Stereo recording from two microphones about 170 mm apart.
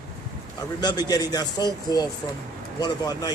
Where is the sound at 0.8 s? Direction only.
25° left (ahead or behind).